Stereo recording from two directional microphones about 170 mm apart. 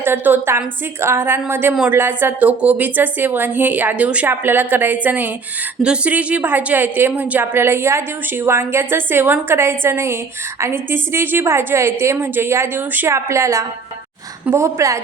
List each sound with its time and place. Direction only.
0.0 s a woman's voice: 15° right (ahead or behind)